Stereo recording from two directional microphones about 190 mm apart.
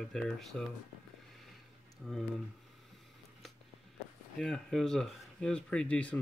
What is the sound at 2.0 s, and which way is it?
Speech, centre (ahead or behind).